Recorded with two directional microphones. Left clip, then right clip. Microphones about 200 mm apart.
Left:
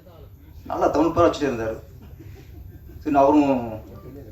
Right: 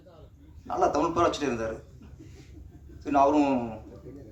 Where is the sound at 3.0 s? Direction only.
55° right (ahead or behind).